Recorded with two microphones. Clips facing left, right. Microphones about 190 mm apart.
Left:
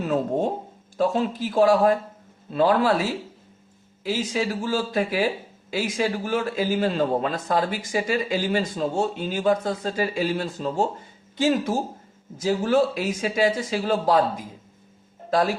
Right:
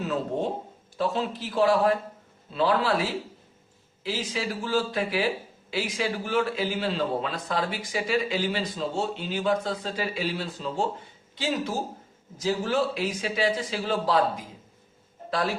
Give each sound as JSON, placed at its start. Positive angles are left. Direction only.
{"t": 0.0, "sound": "a sound", "side_deg": 50}
{"t": 0.9, "sound": "a man's voice", "side_deg": 45}
{"t": 4.0, "sound": "a man's voice", "side_deg": 45}